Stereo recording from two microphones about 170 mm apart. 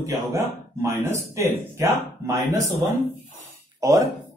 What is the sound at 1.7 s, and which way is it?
Speech, 20° right (ahead or behind).